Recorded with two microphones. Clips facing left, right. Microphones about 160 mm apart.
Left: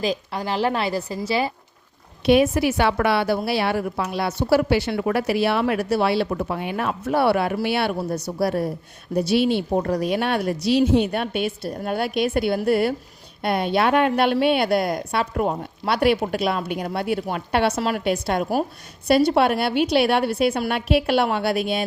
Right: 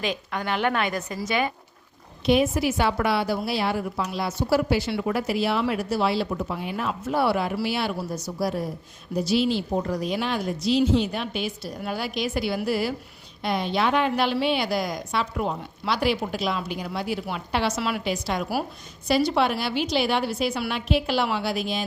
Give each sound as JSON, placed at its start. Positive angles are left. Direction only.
{"t": 0.0, "sound": "a woman's voice", "side_deg": 35}
{"t": 2.2, "sound": "a woman's voice", "side_deg": 65}
{"t": 17.7, "sound": "a woman's voice", "side_deg": 45}